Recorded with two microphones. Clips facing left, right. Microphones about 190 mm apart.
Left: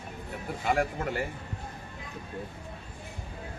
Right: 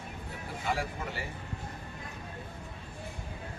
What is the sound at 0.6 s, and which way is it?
Speech, 55° left (ahead or behind).